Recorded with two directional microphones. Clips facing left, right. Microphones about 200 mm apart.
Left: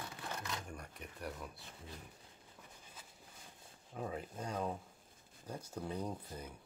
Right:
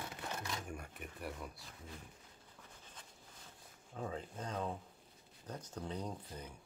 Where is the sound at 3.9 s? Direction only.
10° left (ahead or behind).